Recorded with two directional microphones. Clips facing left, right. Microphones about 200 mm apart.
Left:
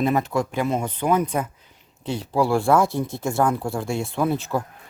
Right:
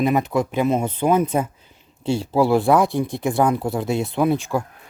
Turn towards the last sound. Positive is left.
turn(degrees=-15)  # may be behind; listen again after turning